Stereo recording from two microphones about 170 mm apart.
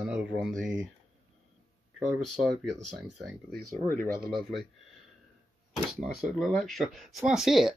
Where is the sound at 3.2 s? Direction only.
Centre (ahead or behind).